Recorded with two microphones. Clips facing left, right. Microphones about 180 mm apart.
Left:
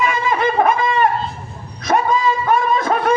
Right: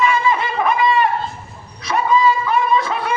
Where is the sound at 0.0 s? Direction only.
45° left (ahead or behind).